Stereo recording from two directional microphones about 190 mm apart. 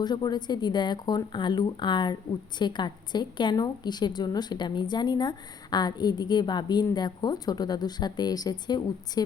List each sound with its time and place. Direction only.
0.0 s a woman's voice: 20° left (ahead or behind)